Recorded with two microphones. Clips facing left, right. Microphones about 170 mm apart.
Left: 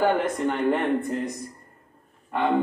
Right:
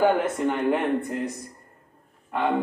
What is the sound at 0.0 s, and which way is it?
Speech, 10° right (ahead or behind).